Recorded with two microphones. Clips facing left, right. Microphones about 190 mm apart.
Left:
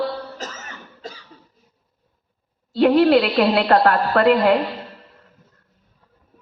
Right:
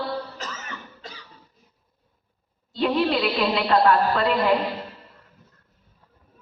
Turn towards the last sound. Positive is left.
turn(degrees=65)  # may be behind; listen again after turning